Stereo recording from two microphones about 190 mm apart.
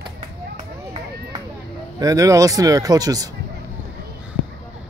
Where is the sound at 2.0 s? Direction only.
15° right (ahead or behind).